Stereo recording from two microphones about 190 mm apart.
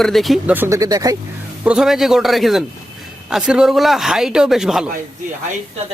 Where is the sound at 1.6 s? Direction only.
5° right (ahead or behind).